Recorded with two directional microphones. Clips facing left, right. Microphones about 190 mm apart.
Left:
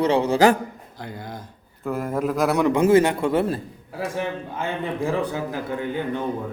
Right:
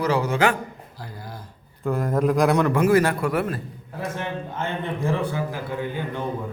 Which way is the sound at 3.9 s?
10° left (ahead or behind).